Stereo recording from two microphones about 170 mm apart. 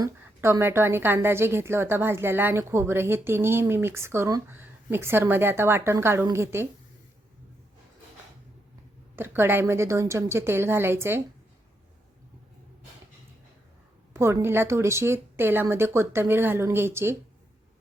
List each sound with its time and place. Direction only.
0.0 s a woman's voice: 20° right (ahead or behind)
9.1 s a woman's voice: 10° right (ahead or behind)
14.1 s a woman's voice: 15° right (ahead or behind)